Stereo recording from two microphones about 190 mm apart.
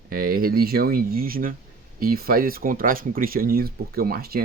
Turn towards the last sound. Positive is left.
turn(degrees=-55)  # may be behind; listen again after turning